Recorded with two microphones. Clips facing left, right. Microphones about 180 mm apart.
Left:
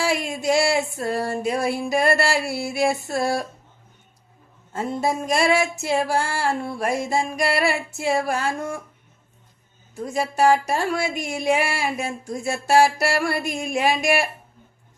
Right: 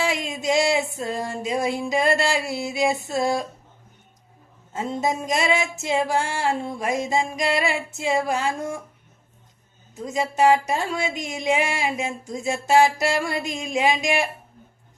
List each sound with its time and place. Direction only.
0.0 s music: 20° right (ahead or behind)
4.7 s speech: 20° right (ahead or behind)
9.9 s speech: 20° right (ahead or behind)